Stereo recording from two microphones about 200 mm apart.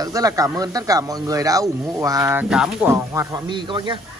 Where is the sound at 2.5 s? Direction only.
5° right (ahead or behind); by 4.0 s 25° right (ahead or behind).